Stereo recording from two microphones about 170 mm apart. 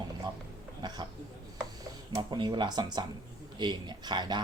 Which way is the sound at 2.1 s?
25° right (ahead or behind).